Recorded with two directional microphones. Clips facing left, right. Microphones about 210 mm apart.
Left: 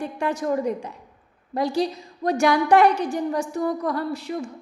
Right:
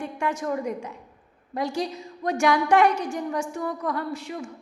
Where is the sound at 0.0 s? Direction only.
35° left (ahead or behind).